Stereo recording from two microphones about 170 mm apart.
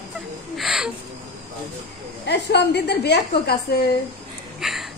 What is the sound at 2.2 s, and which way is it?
A woman's voice, 75° left (ahead or behind).